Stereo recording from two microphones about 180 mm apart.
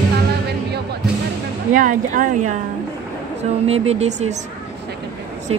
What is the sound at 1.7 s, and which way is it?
Speech, 50° right (ahead or behind).